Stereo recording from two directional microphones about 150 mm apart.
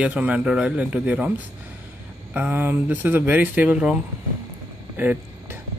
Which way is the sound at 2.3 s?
10° right (ahead or behind).